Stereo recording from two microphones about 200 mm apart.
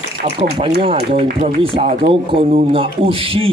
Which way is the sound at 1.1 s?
30° right (ahead or behind).